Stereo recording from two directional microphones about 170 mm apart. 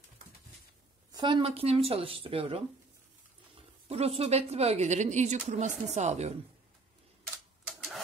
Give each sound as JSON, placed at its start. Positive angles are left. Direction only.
{"t": 1.1, "sound": "speech", "side_deg": -25}
{"t": 7.6, "sound": "typewriter", "side_deg": 0}